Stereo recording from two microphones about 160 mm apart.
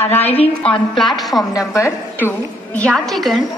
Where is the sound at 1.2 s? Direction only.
Centre (ahead or behind).